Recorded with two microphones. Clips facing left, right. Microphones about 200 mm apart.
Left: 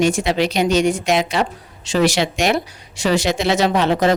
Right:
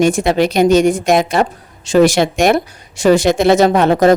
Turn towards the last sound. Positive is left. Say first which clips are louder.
# right 6 dB
turn(degrees=-50)  # may be behind; listen again after turning